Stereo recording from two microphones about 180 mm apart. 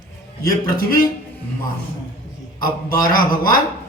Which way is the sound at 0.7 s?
50° left (ahead or behind).